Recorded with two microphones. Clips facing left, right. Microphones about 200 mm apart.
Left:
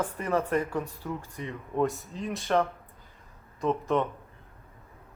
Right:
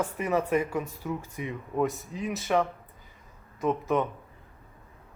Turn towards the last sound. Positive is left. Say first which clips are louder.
# even
turn(degrees=-5)  # may be behind; listen again after turning